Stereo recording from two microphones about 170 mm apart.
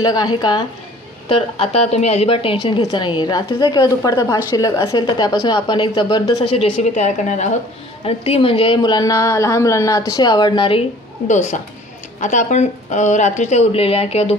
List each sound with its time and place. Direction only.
0.0 s a woman's voice: 25° left (ahead or behind)
1.3 s a woman's voice: 35° left (ahead or behind)
11.2 s a woman's voice: 45° left (ahead or behind)